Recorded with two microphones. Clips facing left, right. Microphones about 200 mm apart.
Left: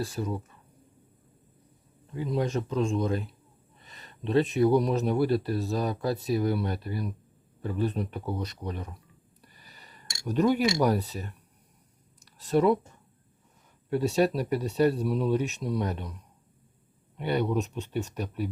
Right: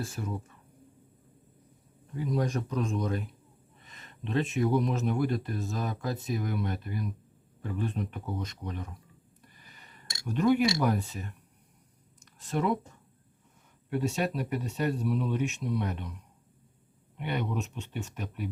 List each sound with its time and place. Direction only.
0.0 s speech: 35° left (ahead or behind)
2.1 s speech: 25° left (ahead or behind)
9.6 s a sound: 35° left (ahead or behind)
10.2 s speech: 35° left (ahead or behind)
12.2 s a sound: 35° left (ahead or behind)
13.9 s speech: 35° left (ahead or behind)
17.2 s speech: 35° left (ahead or behind)